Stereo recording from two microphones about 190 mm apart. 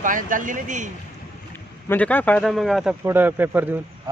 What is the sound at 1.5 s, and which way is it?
A man's voice, 10° left (ahead or behind).